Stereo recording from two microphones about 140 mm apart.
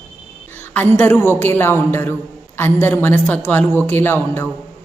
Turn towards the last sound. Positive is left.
turn(degrees=15)  # may be behind; listen again after turning